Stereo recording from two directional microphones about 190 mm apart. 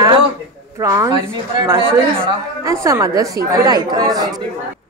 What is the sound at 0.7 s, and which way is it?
A woman's voice, 15° right (ahead or behind).